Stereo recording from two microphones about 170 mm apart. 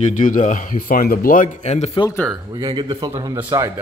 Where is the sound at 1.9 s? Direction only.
20° left (ahead or behind).